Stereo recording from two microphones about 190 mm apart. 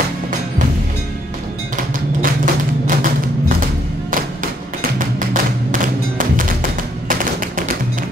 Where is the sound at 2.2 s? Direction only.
45° right (ahead or behind).